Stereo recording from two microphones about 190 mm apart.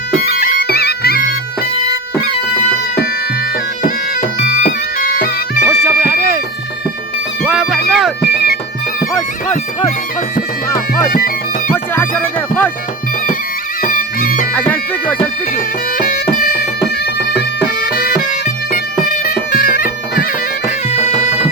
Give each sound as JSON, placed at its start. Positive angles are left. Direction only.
{"t": 0.2, "sound": "bagpipes", "side_deg": 55}
{"t": 3.8, "sound": "bagpipes", "side_deg": 45}
{"t": 4.9, "sound": "music", "side_deg": 50}
{"t": 5.6, "sound": "a sound", "side_deg": -10}
{"t": 7.4, "sound": "music", "side_deg": -5}
{"t": 7.9, "sound": "bagpipes", "side_deg": 0}
{"t": 9.1, "sound": "bagpipes", "side_deg": 20}
{"t": 13.8, "sound": "bagpipes", "side_deg": 50}
{"t": 15.5, "sound": "music", "side_deg": 45}
{"t": 17.2, "sound": "bagpipes", "side_deg": 60}
{"t": 19.5, "sound": "bagpipes", "side_deg": 50}
{"t": 20.7, "sound": "bagpipes", "side_deg": 35}